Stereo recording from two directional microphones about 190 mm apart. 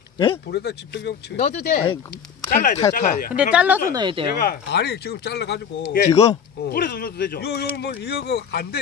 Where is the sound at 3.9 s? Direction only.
25° right (ahead or behind).